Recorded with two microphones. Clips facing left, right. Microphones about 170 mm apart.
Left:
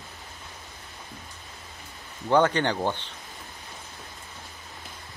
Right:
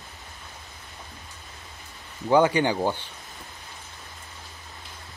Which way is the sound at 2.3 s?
10° right (ahead or behind).